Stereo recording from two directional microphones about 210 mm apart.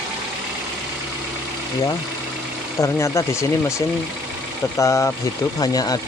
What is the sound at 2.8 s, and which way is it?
Speech, 15° left (ahead or behind).